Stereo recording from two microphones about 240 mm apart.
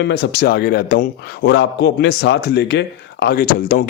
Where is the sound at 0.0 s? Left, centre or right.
Left.